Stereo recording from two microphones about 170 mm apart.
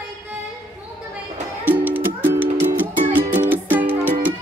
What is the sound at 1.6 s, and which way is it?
Music, 10° right (ahead or behind).